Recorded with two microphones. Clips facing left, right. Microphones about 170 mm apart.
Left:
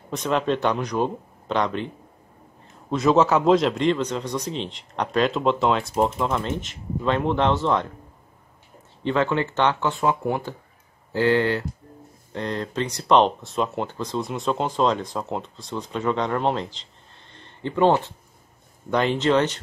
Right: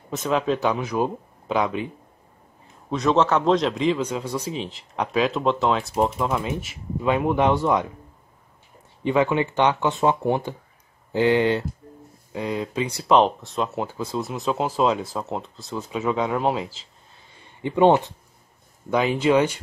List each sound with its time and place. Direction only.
0.1 s speech: centre (ahead or behind)
2.9 s speech: 5° left (ahead or behind)
9.0 s speech: 15° right (ahead or behind)
12.3 s speech: 5° right (ahead or behind)
18.9 s speech: 5° right (ahead or behind)